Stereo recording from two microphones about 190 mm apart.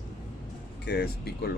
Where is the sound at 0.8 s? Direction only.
60° left (ahead or behind).